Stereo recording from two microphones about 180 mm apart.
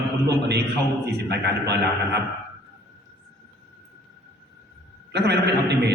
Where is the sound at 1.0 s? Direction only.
70° right (ahead or behind).